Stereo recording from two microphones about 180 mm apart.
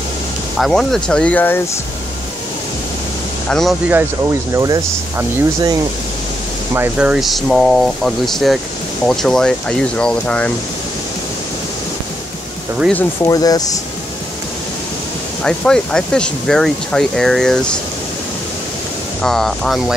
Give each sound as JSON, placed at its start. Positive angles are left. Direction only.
{"t": 0.6, "sound": "speech", "side_deg": 0}
{"t": 3.4, "sound": "speech", "side_deg": 0}
{"t": 4.6, "sound": "speech", "side_deg": -20}
{"t": 6.7, "sound": "speech", "side_deg": -10}
{"t": 12.9, "sound": "speech", "side_deg": 20}
{"t": 15.4, "sound": "speech", "side_deg": 5}
{"t": 19.2, "sound": "speech", "side_deg": 0}